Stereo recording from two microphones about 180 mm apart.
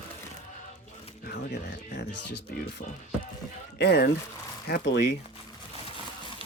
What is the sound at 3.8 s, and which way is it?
Speech, 65° left (ahead or behind).